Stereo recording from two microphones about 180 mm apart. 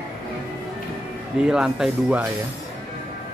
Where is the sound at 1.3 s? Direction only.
5° right (ahead or behind).